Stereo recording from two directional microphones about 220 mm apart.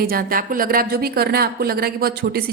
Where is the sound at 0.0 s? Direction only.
40° right (ahead or behind).